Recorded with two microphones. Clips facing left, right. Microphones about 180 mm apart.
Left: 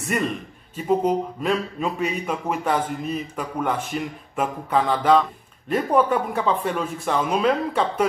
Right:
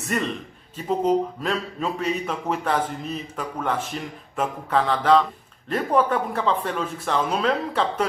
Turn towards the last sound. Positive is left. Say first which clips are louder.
# left 2 dB
turn(degrees=10)  # may be behind; listen again after turning